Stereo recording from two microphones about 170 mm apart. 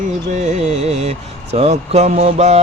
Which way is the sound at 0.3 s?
40° right (ahead or behind).